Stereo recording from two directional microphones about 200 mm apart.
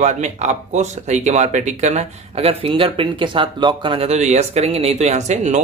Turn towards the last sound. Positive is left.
turn(degrees=-35)  # may be behind; listen again after turning